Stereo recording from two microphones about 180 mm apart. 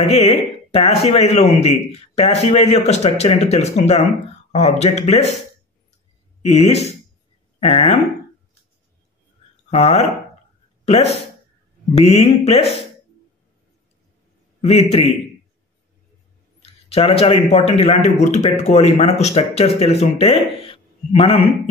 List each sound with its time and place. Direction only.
0.0 s speech: 35° left (ahead or behind)
6.4 s speech: 35° left (ahead or behind)
9.7 s speech: 35° left (ahead or behind)
14.6 s speech: 35° left (ahead or behind)
16.6 s a man's voice: 35° left (ahead or behind)